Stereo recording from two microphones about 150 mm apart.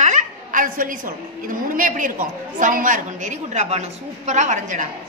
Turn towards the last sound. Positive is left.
turn(degrees=-60)  # may be behind; listen again after turning